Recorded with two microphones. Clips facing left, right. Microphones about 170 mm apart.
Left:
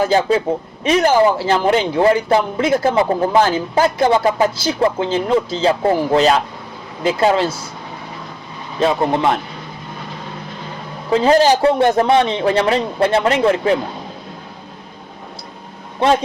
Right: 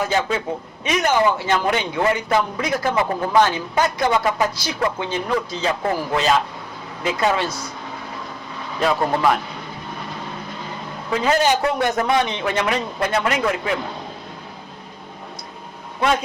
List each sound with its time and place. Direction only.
0.0 s a man's voice: 35° left (ahead or behind)
8.8 s speech: 25° left (ahead or behind)
11.1 s a man's voice: 30° left (ahead or behind)